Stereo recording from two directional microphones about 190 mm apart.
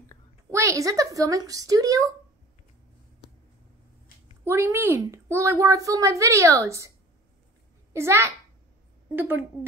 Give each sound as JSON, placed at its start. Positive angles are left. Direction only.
{"t": 0.5, "sound": "a woman's voice", "side_deg": -15}
{"t": 4.5, "sound": "a woman's voice", "side_deg": -10}
{"t": 7.9, "sound": "a child's voice", "side_deg": -15}